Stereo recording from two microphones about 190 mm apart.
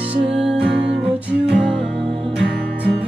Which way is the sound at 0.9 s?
Centre (ahead or behind).